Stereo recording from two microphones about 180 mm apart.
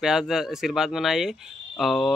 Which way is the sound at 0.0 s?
Centre (ahead or behind).